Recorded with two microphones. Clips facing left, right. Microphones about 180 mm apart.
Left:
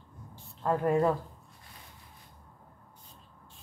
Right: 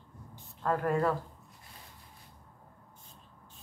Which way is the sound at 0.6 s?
15° left (ahead or behind).